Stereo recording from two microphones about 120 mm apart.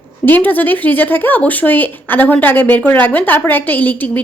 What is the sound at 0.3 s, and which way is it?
Speech, 15° left (ahead or behind).